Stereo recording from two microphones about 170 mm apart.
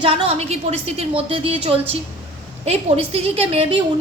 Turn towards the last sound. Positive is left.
turn(degrees=-35)  # may be behind; listen again after turning